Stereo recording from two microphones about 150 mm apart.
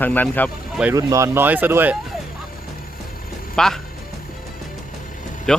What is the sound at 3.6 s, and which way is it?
Speech, 5° left (ahead or behind).